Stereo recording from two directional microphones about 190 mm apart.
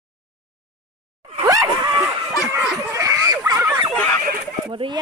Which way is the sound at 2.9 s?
15° right (ahead or behind).